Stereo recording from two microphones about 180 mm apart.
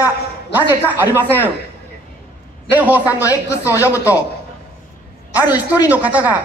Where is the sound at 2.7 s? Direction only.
10° right (ahead or behind).